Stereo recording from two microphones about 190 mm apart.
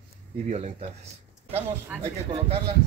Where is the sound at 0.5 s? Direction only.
35° right (ahead or behind).